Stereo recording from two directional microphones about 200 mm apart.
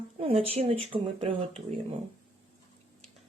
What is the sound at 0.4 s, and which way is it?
A woman's voice, 30° right (ahead or behind).